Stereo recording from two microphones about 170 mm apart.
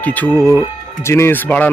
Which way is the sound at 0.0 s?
10° left (ahead or behind).